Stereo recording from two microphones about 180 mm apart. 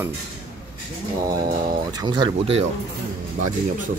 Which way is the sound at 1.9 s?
25° right (ahead or behind).